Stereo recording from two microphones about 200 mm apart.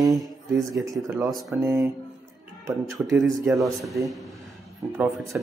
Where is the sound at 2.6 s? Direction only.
15° right (ahead or behind).